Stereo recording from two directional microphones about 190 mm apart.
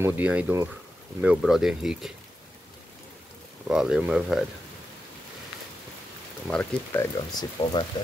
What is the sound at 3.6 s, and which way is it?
Speech, 5° right (ahead or behind).